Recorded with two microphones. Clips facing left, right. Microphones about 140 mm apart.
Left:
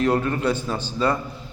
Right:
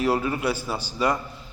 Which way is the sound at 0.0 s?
5° right (ahead or behind).